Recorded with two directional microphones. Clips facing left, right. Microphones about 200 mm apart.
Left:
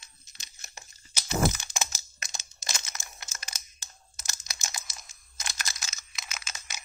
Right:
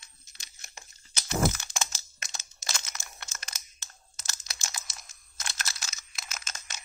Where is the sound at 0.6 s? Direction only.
5° left (ahead or behind).